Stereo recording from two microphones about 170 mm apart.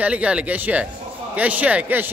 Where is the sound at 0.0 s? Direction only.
5° right (ahead or behind).